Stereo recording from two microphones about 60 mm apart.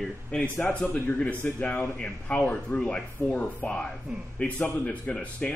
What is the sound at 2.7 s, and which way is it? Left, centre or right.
Speech, left.